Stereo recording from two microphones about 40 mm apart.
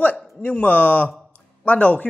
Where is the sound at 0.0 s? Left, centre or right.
Left.